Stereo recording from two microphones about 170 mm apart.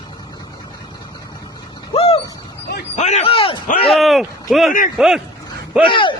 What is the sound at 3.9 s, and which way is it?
Speech, centre (ahead or behind).